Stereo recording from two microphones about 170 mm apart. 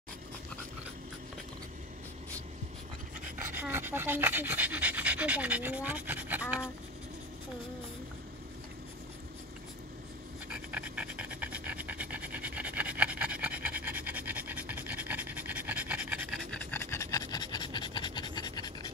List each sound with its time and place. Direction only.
3.5 s speech: 10° right (ahead or behind)
10.5 s pant: 10° right (ahead or behind)
16.5 s pant: 15° left (ahead or behind)